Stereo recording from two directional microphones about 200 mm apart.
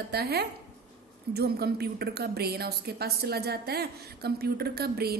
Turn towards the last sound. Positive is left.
turn(degrees=-50)  # may be behind; listen again after turning